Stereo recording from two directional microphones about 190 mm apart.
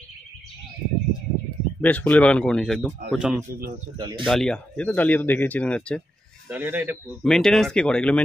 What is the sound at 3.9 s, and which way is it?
Speech, 25° right (ahead or behind).